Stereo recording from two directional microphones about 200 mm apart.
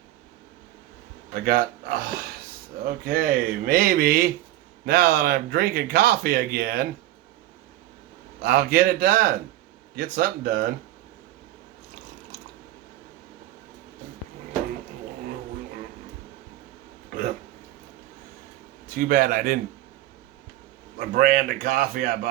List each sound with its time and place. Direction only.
1.3 s speech: 45° right (ahead or behind)
8.4 s speech: 50° right (ahead or behind)
18.9 s speech: 45° right (ahead or behind)
21.0 s speech: 45° right (ahead or behind)